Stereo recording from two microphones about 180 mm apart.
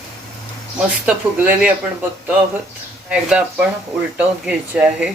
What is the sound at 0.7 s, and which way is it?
Speech, 10° right (ahead or behind).